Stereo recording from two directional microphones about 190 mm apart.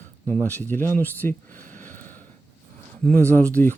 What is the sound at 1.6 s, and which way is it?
Sniff, 45° right (ahead or behind).